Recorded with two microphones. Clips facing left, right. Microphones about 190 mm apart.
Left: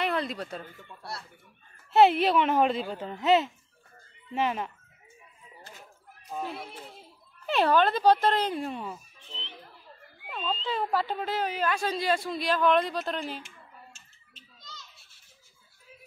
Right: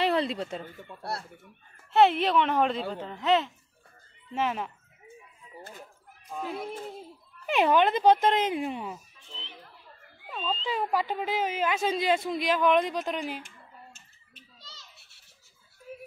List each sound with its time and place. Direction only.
0.0 s speech: 30° right (ahead or behind)
1.9 s speech: 5° left (ahead or behind)
6.3 s speech: 5° left (ahead or behind)
7.4 s speech: 15° right (ahead or behind)
14.6 s children playing: 30° right (ahead or behind)
15.9 s music: 55° right (ahead or behind)